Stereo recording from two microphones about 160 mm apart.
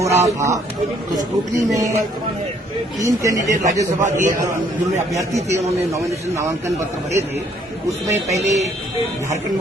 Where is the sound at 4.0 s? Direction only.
50° right (ahead or behind).